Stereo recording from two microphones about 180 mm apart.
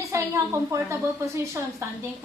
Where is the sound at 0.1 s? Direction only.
15° right (ahead or behind).